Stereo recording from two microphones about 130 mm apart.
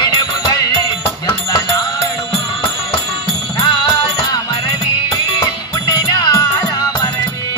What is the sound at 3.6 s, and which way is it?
Music, 30° left (ahead or behind).